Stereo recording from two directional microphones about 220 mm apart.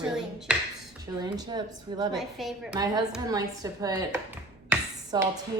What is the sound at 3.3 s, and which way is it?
Speech, 15° right (ahead or behind).